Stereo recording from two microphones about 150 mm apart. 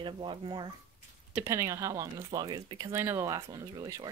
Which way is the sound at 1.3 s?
20° right (ahead or behind).